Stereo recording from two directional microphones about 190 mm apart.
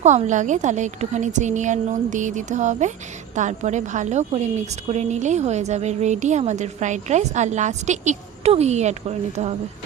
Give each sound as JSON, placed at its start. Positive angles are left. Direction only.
{"t": 0.0, "sound": "a woman's voice", "side_deg": -40}